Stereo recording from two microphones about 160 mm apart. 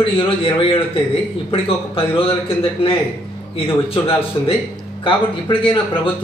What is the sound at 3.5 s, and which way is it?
Speech, 35° left (ahead or behind).